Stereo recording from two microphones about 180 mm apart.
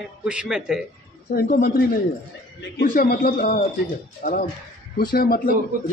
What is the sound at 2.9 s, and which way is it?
A man's voice, 50° left (ahead or behind).